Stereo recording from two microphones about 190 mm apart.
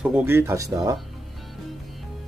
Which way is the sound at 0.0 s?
10° right (ahead or behind).